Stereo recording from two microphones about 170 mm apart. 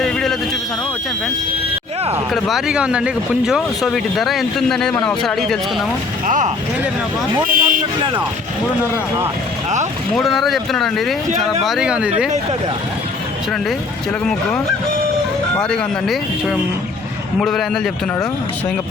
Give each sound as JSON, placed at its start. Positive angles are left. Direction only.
{"t": 0.0, "sound": "a sound", "side_deg": 0}
{"t": 2.3, "sound": "speech", "side_deg": 0}
{"t": 6.2, "sound": "speech", "side_deg": -50}
{"t": 8.8, "sound": "speech", "side_deg": -15}
{"t": 10.2, "sound": "speech", "side_deg": 0}
{"t": 15.5, "sound": "speech", "side_deg": 5}